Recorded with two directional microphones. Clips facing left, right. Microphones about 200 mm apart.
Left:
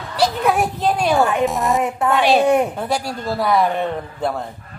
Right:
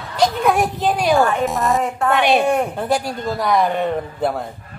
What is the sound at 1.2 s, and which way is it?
Speech, 20° left (ahead or behind).